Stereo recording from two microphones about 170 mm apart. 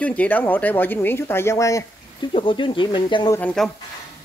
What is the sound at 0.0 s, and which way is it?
Speech, 10° left (ahead or behind).